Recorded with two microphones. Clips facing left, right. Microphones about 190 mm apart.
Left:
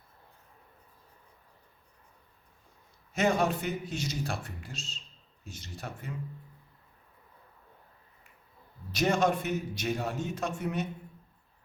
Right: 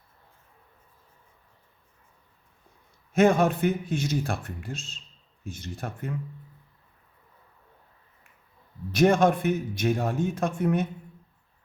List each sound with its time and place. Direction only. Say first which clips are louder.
3.1 s speech: right 7 dB; 55° right (ahead or behind)
8.9 s a man's voice: right 6 dB; 55° right (ahead or behind)